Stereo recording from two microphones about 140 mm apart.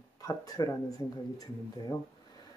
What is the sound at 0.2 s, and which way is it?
Speech, 25° left (ahead or behind).